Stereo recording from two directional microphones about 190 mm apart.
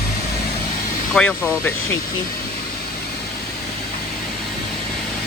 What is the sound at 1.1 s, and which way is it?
Speech, 5° left (ahead or behind).